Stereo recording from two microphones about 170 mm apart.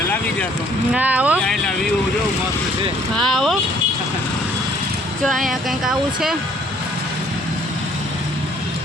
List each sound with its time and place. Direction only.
0.9 s speech: 10° right (ahead or behind)
3.2 s speech: centre (ahead or behind)
5.2 s speech: centre (ahead or behind)